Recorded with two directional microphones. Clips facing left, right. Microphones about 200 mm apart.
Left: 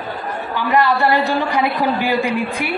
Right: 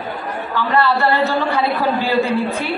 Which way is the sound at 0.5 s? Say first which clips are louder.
Left 1 dB; 15° left (ahead or behind).